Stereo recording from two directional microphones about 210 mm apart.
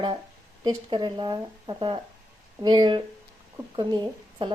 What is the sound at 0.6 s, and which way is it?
A woman's voice, 20° right (ahead or behind).